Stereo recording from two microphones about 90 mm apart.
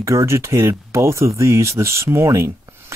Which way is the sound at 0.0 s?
35° right (ahead or behind).